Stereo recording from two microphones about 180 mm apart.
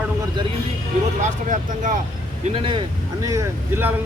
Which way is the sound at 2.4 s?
30° right (ahead or behind).